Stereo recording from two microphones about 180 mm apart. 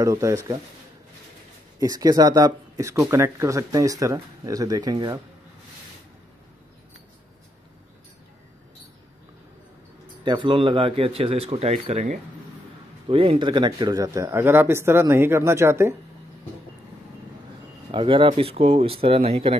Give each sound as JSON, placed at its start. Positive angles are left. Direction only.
{"t": 0.0, "sound": "speech", "side_deg": -15}
{"t": 1.8, "sound": "speech", "side_deg": -20}
{"t": 10.2, "sound": "speech", "side_deg": -25}
{"t": 17.9, "sound": "speech", "side_deg": -30}